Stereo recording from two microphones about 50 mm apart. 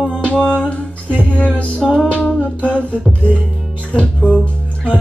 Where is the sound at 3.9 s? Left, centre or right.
Left.